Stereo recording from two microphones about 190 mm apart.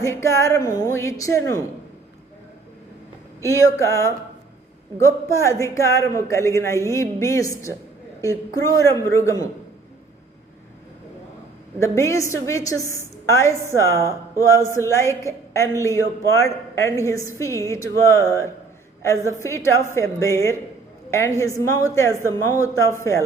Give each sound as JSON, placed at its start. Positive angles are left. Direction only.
{"t": 0.0, "sound": "a woman's voice", "side_deg": 15}
{"t": 3.4, "sound": "a woman's voice", "side_deg": 15}
{"t": 11.8, "sound": "a woman's voice", "side_deg": 15}